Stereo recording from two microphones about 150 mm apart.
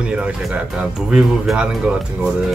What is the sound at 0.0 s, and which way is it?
Speech, 10° right (ahead or behind).